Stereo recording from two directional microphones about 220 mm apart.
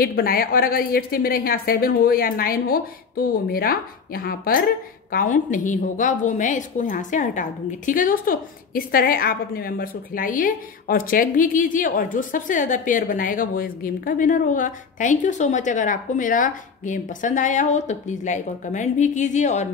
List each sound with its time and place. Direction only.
0.0 s a woman's voice: 40° left (ahead or behind)